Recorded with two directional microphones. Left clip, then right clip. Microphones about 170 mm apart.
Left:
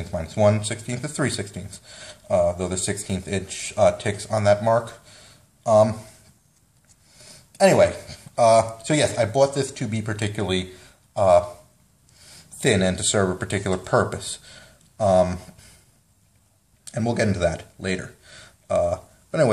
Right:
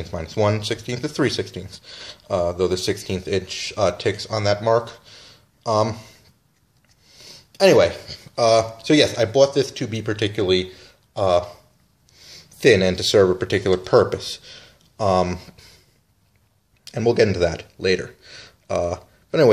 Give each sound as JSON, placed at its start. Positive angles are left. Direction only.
{"t": 0.1, "sound": "speech", "side_deg": -35}
{"t": 7.2, "sound": "speech", "side_deg": -35}
{"t": 16.8, "sound": "speech", "side_deg": -35}